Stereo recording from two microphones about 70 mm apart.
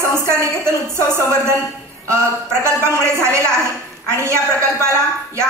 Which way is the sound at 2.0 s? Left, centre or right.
Right.